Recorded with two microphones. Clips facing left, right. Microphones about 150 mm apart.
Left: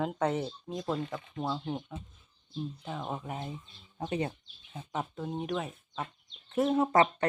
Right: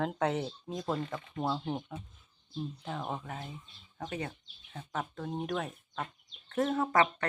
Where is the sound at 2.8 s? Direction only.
Centre (ahead or behind).